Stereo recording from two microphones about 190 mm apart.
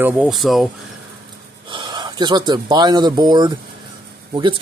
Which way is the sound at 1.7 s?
25° right (ahead or behind).